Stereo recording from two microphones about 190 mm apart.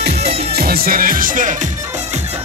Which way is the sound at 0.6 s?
50° right (ahead or behind).